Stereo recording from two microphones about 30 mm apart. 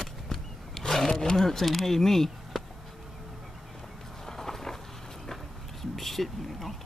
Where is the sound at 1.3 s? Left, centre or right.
Centre.